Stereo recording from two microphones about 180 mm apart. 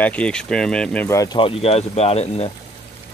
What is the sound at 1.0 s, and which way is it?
Speech, 20° left (ahead or behind).